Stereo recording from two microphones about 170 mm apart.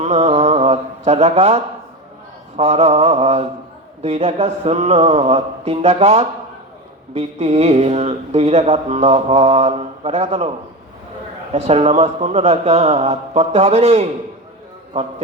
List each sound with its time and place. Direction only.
0.0 s mantra: 40° right (ahead or behind)
2.6 s speech: 35° right (ahead or behind)
11.5 s speech: 40° right (ahead or behind)